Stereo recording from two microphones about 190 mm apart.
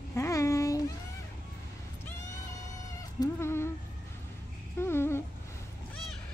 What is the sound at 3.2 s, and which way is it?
Insect, 15° left (ahead or behind).